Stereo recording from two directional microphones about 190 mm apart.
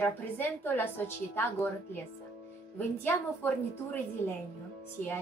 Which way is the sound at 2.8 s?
10° left (ahead or behind).